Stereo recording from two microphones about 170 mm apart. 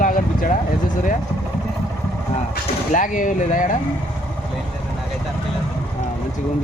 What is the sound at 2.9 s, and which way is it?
Speech, 50° left (ahead or behind).